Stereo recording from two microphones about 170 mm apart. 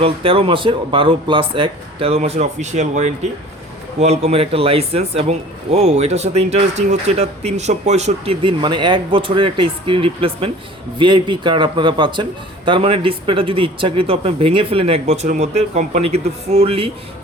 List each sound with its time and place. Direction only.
0.0 s a man's voice: 35° right (ahead or behind)